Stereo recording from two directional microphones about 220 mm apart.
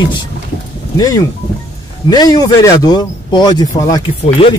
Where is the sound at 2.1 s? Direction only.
20° left (ahead or behind).